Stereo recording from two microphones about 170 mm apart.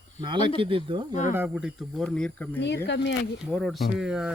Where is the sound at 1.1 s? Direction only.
45° left (ahead or behind).